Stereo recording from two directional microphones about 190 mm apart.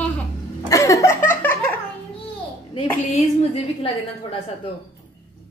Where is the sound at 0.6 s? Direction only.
15° left (ahead or behind).